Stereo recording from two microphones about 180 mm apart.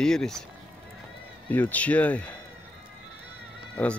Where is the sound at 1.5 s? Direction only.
10° left (ahead or behind).